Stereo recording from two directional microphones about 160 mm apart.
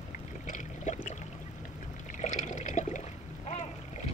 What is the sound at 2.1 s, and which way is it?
Water, 50° left (ahead or behind).